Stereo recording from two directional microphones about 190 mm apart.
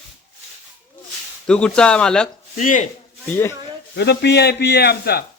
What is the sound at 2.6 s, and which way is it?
Speech, 40° left (ahead or behind).